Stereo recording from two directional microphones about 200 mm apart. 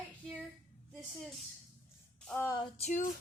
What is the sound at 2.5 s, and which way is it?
Female singing, 25° left (ahead or behind).